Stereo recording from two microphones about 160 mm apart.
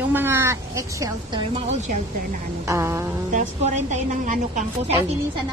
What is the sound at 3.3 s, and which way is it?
A woman's voice, 45° right (ahead or behind).